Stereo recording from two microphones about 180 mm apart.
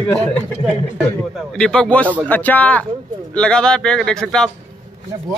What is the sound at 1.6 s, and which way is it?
A man's voice, 5° left (ahead or behind).